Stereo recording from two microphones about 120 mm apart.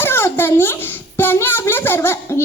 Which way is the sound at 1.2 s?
15° left (ahead or behind).